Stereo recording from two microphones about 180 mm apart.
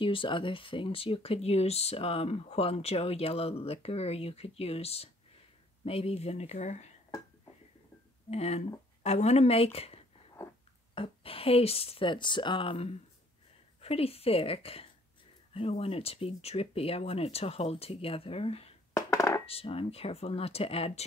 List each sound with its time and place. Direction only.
0.0 s speech: 30° left (ahead or behind)
8.3 s speech: 35° left (ahead or behind)
11.0 s speech: 30° left (ahead or behind)
18.9 s music: 15° left (ahead or behind)
19.4 s speech: 30° left (ahead or behind)